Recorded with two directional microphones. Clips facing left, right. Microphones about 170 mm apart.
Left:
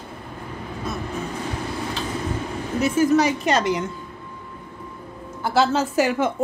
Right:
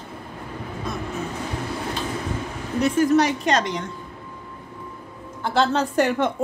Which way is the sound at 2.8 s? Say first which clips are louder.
Even; 5° left (ahead or behind).